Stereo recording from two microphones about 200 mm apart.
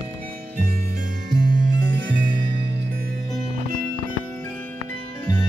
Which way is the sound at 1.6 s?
65° right (ahead or behind).